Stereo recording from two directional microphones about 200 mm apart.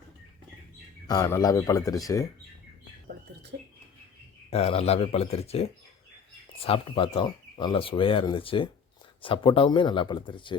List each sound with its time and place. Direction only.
1.0 s speech: 20° left (ahead or behind)
4.5 s speech: 30° left (ahead or behind)